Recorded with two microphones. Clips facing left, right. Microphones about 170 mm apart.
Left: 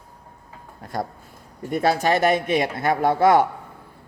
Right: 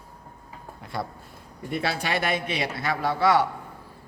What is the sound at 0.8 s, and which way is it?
A man's voice, 45° left (ahead or behind).